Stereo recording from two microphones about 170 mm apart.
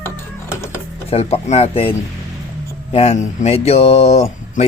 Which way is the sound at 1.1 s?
40° left (ahead or behind).